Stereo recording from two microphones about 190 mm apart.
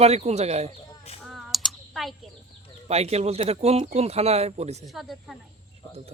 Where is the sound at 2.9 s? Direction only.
35° right (ahead or behind).